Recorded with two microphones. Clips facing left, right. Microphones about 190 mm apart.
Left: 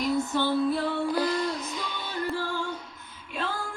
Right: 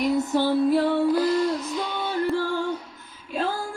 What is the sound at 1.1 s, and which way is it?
Music, 5° right (ahead or behind).